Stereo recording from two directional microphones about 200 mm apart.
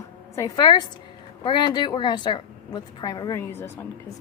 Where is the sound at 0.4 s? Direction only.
20° left (ahead or behind).